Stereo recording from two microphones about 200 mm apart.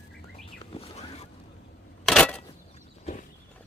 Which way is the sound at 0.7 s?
30° left (ahead or behind).